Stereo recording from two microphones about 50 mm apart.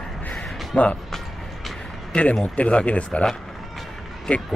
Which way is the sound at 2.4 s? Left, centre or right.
Left.